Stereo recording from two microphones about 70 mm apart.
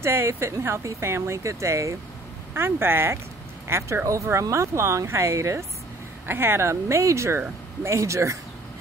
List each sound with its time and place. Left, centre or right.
0.0 s speech: right
2.5 s speech: right
6.2 s speech: right